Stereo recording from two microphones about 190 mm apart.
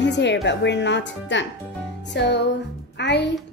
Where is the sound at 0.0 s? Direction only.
65° left (ahead or behind).